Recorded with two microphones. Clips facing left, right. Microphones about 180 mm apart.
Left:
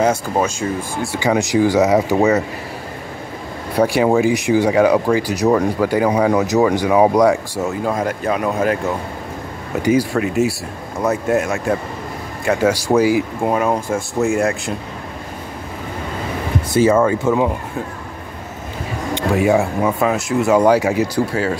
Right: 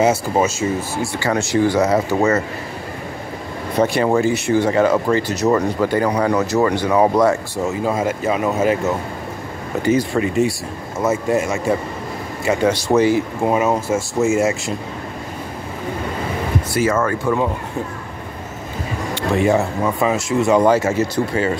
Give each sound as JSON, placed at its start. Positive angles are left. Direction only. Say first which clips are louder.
{"t": 0.0, "sound": "speech", "louder": "right 1 dB", "side_deg": -5}
{"t": 1.1, "sound": "speech", "louder": "left 3 dB", "side_deg": 15}
{"t": 3.7, "sound": "speech", "louder": "left 2 dB", "side_deg": 10}
{"t": 6.3, "sound": "speech", "louder": "left 2 dB", "side_deg": 15}
{"t": 7.6, "sound": "speech", "louder": "right 1 dB", "side_deg": 0}
{"t": 9.8, "sound": "speech", "louder": "left 1 dB", "side_deg": 10}
{"t": 13.5, "sound": "speech", "louder": "right 2 dB", "side_deg": -5}
{"t": 16.9, "sound": "speech", "louder": "left 4 dB", "side_deg": 15}
{"t": 19.1, "sound": "speech", "louder": "left 1 dB", "side_deg": 5}
{"t": 21.3, "sound": "speech", "louder": "even", "side_deg": 0}